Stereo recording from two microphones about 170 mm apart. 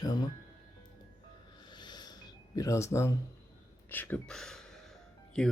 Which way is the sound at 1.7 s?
25° left (ahead or behind).